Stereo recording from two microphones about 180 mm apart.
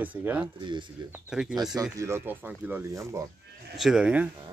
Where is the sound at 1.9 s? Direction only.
15° right (ahead or behind).